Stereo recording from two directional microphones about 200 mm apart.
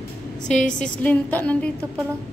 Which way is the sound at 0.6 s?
40° left (ahead or behind).